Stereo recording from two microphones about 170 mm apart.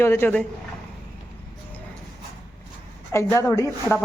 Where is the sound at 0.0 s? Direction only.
15° left (ahead or behind).